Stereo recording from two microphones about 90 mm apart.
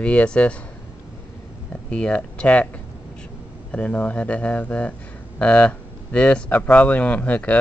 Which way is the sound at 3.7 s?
15° left (ahead or behind).